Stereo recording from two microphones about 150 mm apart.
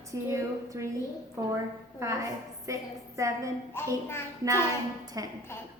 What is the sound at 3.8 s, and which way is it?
Speech, 15° left (ahead or behind).